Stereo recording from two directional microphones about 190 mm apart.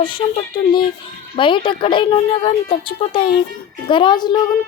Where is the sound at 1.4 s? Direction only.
25° left (ahead or behind).